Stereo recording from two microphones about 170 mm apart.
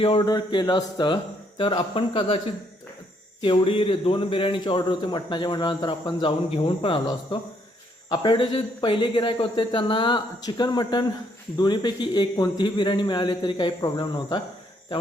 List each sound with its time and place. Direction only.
0.0 s a man's voice: 30° left (ahead or behind)
3.4 s a man's voice: 30° left (ahead or behind)